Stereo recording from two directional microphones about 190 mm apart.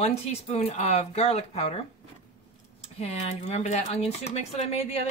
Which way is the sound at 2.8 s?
35° left (ahead or behind).